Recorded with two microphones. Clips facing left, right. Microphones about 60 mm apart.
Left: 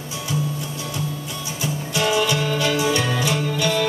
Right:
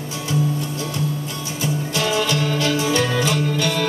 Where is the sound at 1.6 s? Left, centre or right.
Centre.